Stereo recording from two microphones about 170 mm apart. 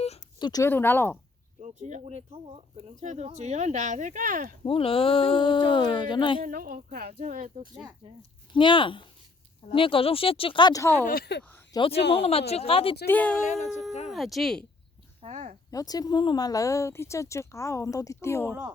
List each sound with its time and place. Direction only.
0.3 s speech: 25° left (ahead or behind)
0.7 s speech: 15° left (ahead or behind)
1.6 s speech: 45° right (ahead or behind)
4.6 s speech: 35° left (ahead or behind)
6.4 s speech: 55° right (ahead or behind)
7.2 s speech: 45° right (ahead or behind)
8.5 s speech: 30° left (ahead or behind)
11.0 s speech: 60° left (ahead or behind)
11.7 s speech: 35° left (ahead or behind)
13.1 s speech: 10° left (ahead or behind)
15.2 s speech: 40° right (ahead or behind)
15.7 s speech: 20° left (ahead or behind)